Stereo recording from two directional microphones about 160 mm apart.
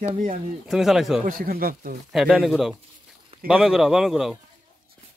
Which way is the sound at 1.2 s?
65° right (ahead or behind).